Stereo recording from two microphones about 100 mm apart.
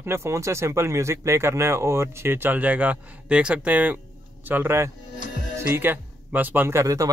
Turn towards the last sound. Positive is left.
turn(degrees=-30)  # may be behind; listen again after turning